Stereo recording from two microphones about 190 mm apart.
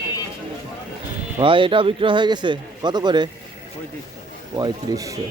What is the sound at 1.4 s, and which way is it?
A man's voice, 25° right (ahead or behind).